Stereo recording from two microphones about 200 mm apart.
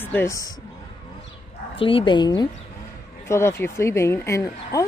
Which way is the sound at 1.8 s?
25° left (ahead or behind).